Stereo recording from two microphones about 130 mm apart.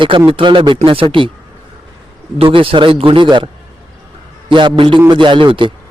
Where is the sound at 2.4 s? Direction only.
45° right (ahead or behind).